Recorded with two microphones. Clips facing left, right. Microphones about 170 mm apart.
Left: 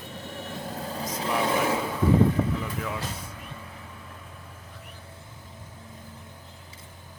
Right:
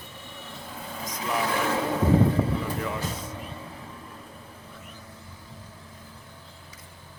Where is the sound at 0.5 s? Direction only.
40° left (ahead or behind).